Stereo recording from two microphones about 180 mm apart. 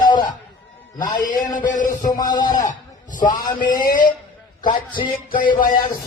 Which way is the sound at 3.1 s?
45° left (ahead or behind).